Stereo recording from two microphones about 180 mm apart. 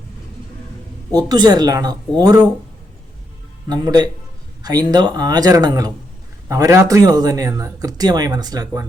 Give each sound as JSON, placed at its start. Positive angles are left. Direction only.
{"t": 1.1, "sound": "speech", "side_deg": -20}
{"t": 3.7, "sound": "speech", "side_deg": -20}